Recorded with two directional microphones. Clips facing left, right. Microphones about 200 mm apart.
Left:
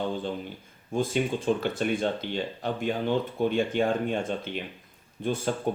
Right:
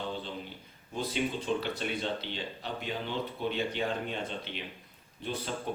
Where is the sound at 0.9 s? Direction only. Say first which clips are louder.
Left 6 dB; 50° left (ahead or behind).